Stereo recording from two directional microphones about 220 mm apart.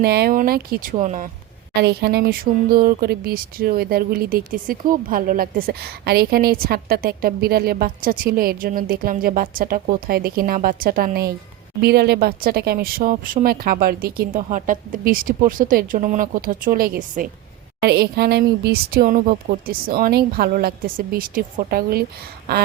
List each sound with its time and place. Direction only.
0.0 s speech: 45° right (ahead or behind)
1.7 s speech: 50° right (ahead or behind)